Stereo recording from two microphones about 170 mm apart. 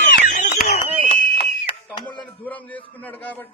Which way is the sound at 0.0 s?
50° left (ahead or behind).